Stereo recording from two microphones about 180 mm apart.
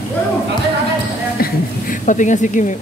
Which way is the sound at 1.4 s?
45° left (ahead or behind).